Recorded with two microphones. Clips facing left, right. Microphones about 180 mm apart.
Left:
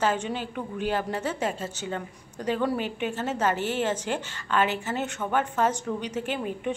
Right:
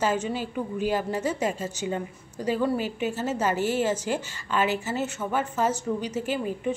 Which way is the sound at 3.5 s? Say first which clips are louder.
Right 3 dB; 40° right (ahead or behind).